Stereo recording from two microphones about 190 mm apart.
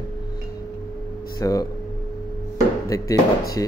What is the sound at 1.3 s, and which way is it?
Speech, 20° left (ahead or behind).